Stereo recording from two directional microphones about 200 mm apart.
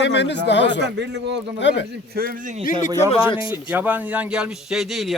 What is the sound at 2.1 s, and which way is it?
Speech, 45° right (ahead or behind).